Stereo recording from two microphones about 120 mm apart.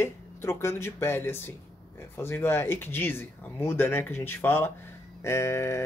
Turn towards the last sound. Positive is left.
turn(degrees=20)  # may be behind; listen again after turning